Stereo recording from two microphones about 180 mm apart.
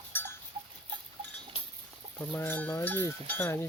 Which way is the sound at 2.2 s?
15° left (ahead or behind).